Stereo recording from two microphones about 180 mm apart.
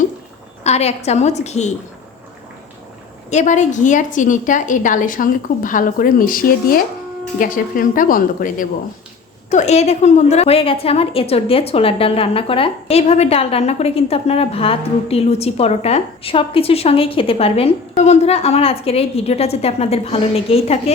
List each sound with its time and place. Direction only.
0.6 s a woman's voice: 35° left (ahead or behind)
3.2 s a woman's voice: 40° left (ahead or behind)